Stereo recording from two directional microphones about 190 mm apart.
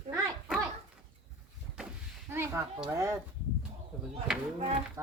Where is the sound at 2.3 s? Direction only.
15° right (ahead or behind).